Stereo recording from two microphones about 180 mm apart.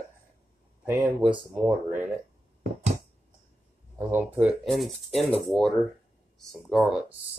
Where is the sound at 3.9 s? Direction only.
10° right (ahead or behind).